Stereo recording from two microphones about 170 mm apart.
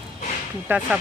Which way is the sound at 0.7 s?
10° right (ahead or behind).